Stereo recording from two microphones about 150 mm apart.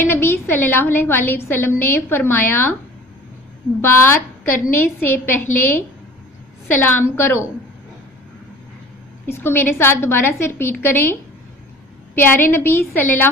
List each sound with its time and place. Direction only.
0.0 s a woman's voice: 15° left (ahead or behind)
3.8 s a woman's voice: 15° left (ahead or behind)
9.3 s a woman's voice: 15° left (ahead or behind)
12.2 s a woman's voice: 15° left (ahead or behind)